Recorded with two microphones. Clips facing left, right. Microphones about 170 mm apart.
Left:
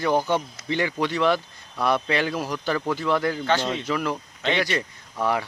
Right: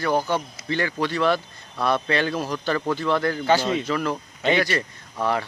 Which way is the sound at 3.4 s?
5° right (ahead or behind).